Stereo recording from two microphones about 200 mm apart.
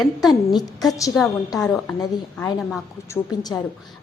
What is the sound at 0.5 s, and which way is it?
Speech, 20° left (ahead or behind).